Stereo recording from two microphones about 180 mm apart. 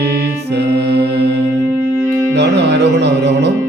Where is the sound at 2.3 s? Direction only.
70° right (ahead or behind).